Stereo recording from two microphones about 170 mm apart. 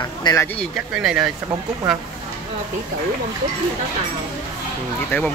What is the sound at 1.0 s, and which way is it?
Speech, centre (ahead or behind).